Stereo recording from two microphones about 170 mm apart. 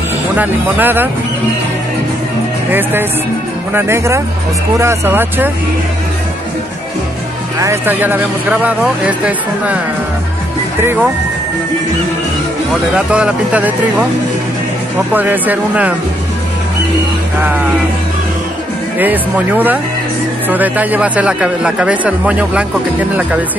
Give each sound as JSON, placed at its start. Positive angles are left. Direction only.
{"t": 0.4, "sound": "speech", "side_deg": -10}
{"t": 2.7, "sound": "speech", "side_deg": -10}
{"t": 7.6, "sound": "speech", "side_deg": -15}
{"t": 10.8, "sound": "speech", "side_deg": -15}
{"t": 12.9, "sound": "speech", "side_deg": -5}
{"t": 15.1, "sound": "speech", "side_deg": -10}
{"t": 18.9, "sound": "speech", "side_deg": -10}